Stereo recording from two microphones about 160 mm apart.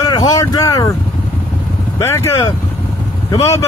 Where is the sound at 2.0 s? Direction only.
15° left (ahead or behind).